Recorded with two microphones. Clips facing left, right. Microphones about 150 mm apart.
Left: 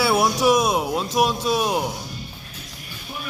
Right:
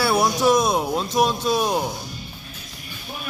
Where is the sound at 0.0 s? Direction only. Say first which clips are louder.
Even; 5° left (ahead or behind).